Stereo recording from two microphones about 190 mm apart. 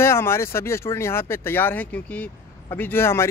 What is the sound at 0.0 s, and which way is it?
Speech, 15° left (ahead or behind).